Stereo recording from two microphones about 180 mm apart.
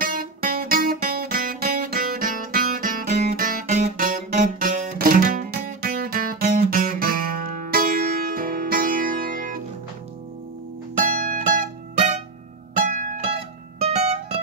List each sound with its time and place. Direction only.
0.0 s guitar: 55° right (ahead or behind)
7.6 s music: 50° right (ahead or behind)
11.0 s music: 45° right (ahead or behind)
12.7 s music: 45° right (ahead or behind)